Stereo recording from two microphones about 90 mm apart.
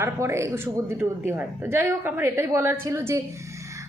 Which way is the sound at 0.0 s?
30° right (ahead or behind).